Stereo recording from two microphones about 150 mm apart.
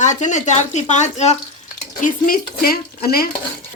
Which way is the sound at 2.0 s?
70° left (ahead or behind).